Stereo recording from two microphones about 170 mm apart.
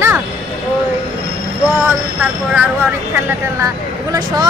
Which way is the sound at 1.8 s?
10° right (ahead or behind).